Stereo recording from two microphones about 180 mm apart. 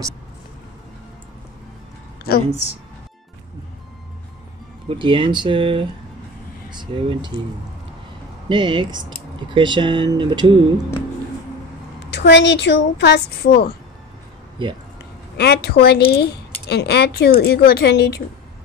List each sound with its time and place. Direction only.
4.8 s speech: 25° right (ahead or behind)
8.5 s speech: 25° right (ahead or behind)
12.1 s speech: 75° left (ahead or behind)
14.6 s speech: 25° right (ahead or behind)
15.3 s speech: 65° left (ahead or behind)